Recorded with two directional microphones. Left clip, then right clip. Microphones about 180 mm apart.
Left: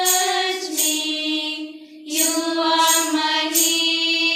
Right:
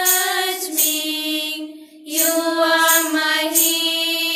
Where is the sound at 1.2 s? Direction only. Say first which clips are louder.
Right 1 dB; 60° right (ahead or behind).